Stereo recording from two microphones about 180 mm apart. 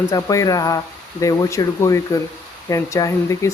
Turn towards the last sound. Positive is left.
turn(degrees=15)  # may be behind; listen again after turning